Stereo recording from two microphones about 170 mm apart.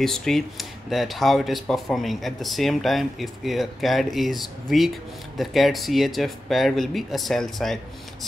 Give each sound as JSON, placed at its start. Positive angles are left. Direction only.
{"t": 0.0, "sound": "speech", "side_deg": 0}